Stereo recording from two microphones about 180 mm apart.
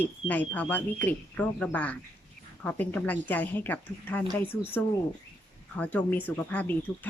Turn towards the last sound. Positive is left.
turn(degrees=10)  # may be behind; listen again after turning